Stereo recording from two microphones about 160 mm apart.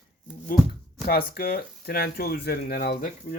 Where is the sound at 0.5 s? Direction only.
65° left (ahead or behind).